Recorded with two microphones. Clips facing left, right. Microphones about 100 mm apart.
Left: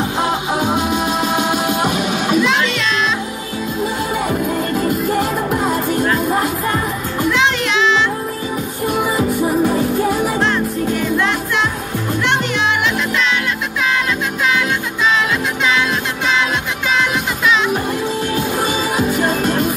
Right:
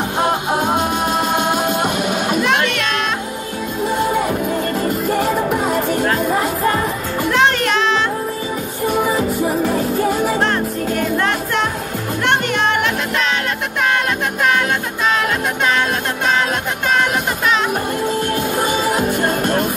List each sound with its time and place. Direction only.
0.7 s music: 50° right (ahead or behind)
1.3 s music: 10° left (ahead or behind)
2.3 s music: 55° right (ahead or behind)
4.3 s music: centre (ahead or behind)
7.2 s music: 50° right (ahead or behind)
8.8 s music: centre (ahead or behind)
10.4 s music: 45° right (ahead or behind)
16.9 s music: 50° right (ahead or behind)
18.7 s music: 50° right (ahead or behind)